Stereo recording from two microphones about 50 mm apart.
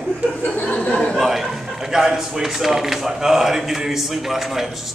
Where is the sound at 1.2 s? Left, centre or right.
Centre.